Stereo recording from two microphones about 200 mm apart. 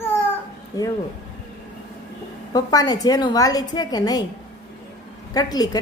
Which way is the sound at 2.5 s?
20° left (ahead or behind).